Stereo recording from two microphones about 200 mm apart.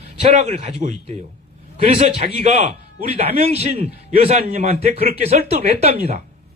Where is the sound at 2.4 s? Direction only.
35° right (ahead or behind).